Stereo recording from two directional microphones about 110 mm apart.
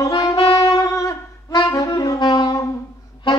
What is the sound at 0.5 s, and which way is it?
Saxophone, 30° left (ahead or behind).